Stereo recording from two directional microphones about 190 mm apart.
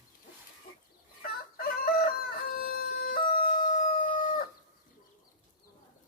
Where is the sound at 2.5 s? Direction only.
50° left (ahead or behind).